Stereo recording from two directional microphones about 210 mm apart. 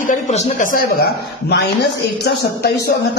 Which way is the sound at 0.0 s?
35° left (ahead or behind).